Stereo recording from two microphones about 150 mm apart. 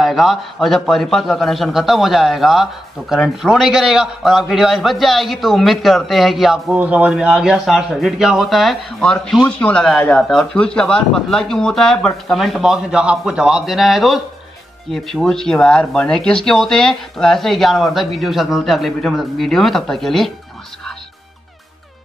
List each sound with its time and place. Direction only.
0.0 s a man's voice: centre (ahead or behind)